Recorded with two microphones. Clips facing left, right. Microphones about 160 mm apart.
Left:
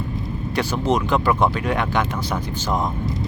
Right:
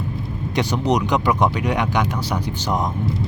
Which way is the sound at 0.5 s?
15° right (ahead or behind).